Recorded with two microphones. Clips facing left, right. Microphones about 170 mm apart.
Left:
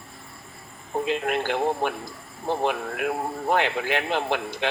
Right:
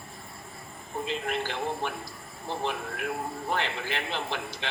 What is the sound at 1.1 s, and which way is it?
Speech, 60° left (ahead or behind).